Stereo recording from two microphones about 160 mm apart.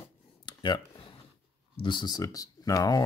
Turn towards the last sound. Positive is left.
turn(degrees=25)  # may be behind; listen again after turning